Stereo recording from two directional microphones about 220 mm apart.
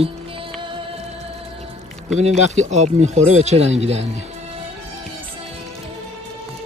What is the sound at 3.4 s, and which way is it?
Speech, 30° right (ahead or behind).